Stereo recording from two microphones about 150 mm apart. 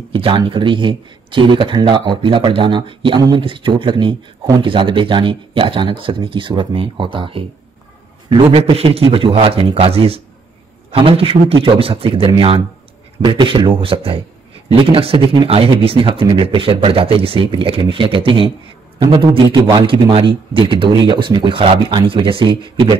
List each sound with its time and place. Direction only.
0.1 s a man's voice: 35° right (ahead or behind)